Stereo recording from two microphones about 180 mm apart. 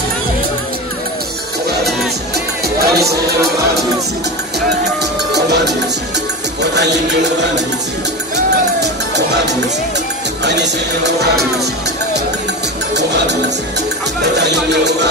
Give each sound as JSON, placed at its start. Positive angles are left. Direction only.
{"t": 2.3, "sound": "music", "side_deg": -65}
{"t": 5.3, "sound": "music", "side_deg": -70}
{"t": 8.8, "sound": "music", "side_deg": -70}
{"t": 14.2, "sound": "music", "side_deg": -70}